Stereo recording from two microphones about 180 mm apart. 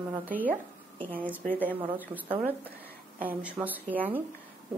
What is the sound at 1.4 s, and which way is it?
Speech, 10° left (ahead or behind).